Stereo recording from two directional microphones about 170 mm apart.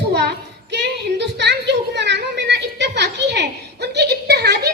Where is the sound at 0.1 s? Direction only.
75° right (ahead or behind).